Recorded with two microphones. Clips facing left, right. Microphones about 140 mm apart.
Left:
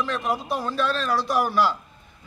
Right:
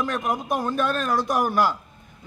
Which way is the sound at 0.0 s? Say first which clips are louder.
Even; 50° right (ahead or behind).